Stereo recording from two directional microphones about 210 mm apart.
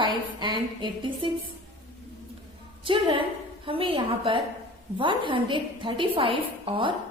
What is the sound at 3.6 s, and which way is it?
A woman's voice, 25° right (ahead or behind).